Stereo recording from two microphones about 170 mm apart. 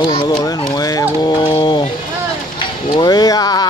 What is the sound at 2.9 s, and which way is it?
Speech, 25° left (ahead or behind).